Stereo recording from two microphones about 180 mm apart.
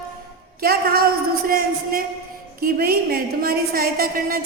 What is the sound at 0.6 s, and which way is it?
A woman's voice, 55° right (ahead or behind).